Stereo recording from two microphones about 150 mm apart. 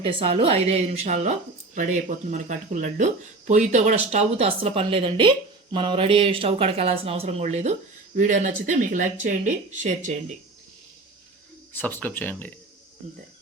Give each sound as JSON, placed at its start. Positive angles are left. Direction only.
{"t": 0.0, "sound": "speech", "side_deg": -35}
{"t": 11.7, "sound": "speech", "side_deg": 10}